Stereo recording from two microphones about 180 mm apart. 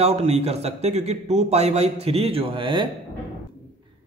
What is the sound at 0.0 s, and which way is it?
A man's voice, 35° right (ahead or behind).